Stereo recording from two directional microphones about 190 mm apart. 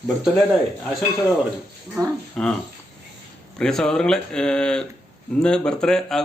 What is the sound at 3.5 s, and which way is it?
A man's voice, 5° left (ahead or behind).